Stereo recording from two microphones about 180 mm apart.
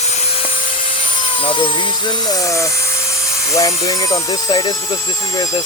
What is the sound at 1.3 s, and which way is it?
Speech, 30° left (ahead or behind).